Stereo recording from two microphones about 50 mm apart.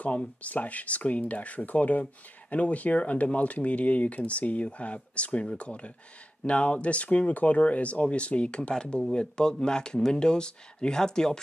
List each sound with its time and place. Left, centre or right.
0.4 s speech: left; by 11.3 s centre